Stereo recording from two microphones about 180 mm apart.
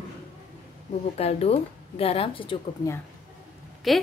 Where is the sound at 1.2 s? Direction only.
35° left (ahead or behind).